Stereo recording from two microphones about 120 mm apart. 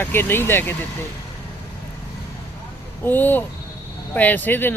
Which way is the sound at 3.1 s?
15° left (ahead or behind).